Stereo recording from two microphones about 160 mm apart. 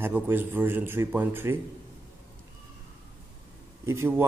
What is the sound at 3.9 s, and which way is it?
Speech, 15° right (ahead or behind).